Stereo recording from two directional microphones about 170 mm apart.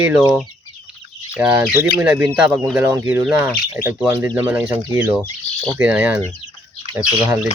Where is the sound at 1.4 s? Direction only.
10° right (ahead or behind).